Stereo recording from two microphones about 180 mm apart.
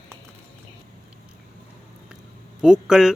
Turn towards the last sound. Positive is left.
turn(degrees=-5)  # may be behind; listen again after turning